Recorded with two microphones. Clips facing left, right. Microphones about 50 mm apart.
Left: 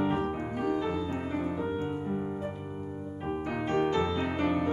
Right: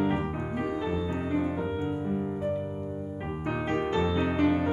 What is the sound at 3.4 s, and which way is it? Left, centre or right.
Music, centre.